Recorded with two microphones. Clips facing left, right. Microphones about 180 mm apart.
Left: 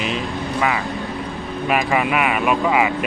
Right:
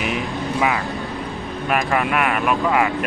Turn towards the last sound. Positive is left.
turn(degrees=5)  # may be behind; listen again after turning